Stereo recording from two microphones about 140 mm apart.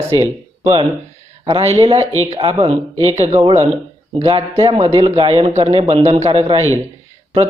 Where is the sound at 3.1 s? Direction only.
50° right (ahead or behind).